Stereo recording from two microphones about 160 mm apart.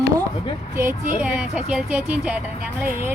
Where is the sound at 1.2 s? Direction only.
10° right (ahead or behind).